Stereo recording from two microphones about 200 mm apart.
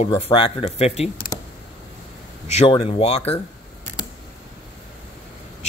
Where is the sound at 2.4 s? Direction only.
30° left (ahead or behind).